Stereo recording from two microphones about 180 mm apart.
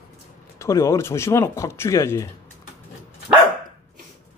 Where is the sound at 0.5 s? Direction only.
15° left (ahead or behind).